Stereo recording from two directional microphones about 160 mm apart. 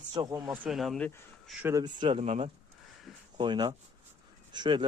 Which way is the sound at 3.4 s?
25° right (ahead or behind).